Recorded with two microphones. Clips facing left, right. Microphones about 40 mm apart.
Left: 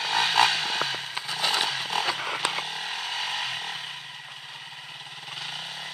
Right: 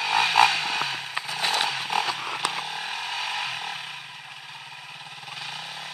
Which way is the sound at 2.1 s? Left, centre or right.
Centre.